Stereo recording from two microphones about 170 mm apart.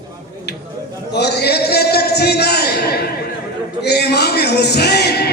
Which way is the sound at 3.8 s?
75° left (ahead or behind).